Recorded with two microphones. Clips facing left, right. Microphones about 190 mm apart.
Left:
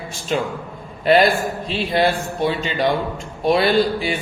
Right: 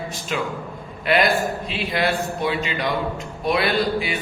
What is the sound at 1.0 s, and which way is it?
Speech, 30° left (ahead or behind).